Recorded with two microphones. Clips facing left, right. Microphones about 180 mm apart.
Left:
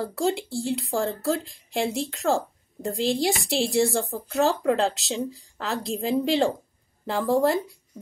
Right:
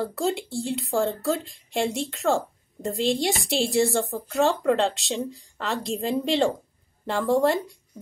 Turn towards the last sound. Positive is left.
turn(degrees=0)  # may be behind; listen again after turning